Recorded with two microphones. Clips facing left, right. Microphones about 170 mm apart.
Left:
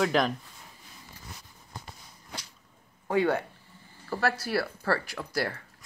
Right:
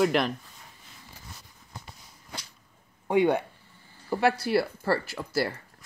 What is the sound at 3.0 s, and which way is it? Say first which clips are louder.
Speech: right 3 dB; 20° right (ahead or behind).